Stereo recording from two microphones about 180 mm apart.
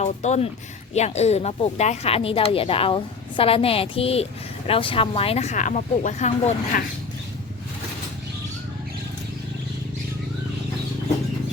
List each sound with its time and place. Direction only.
0.0 s a woman's voice: 40° left (ahead or behind)